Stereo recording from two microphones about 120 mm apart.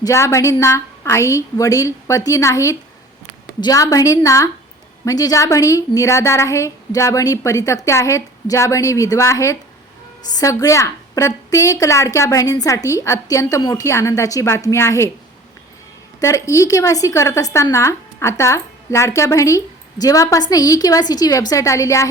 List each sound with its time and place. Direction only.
0.0 s a woman's voice: 25° left (ahead or behind)
16.2 s a woman's voice: 25° left (ahead or behind)